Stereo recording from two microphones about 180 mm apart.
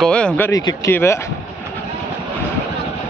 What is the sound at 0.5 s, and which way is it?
Speech, 20° left (ahead or behind).